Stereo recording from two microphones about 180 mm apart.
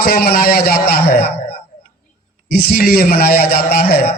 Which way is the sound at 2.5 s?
60° left (ahead or behind).